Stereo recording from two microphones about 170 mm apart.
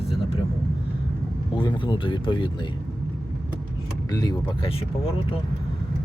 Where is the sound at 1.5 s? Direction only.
25° left (ahead or behind).